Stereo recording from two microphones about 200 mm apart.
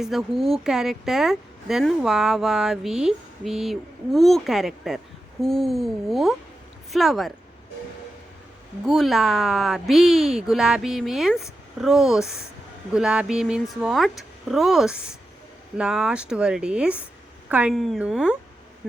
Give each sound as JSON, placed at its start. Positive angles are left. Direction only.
{"t": 0.0, "sound": "speech", "side_deg": 0}
{"t": 8.9, "sound": "speech", "side_deg": 0}